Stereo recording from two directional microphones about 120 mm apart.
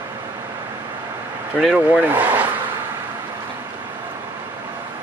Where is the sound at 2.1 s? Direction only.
15° right (ahead or behind).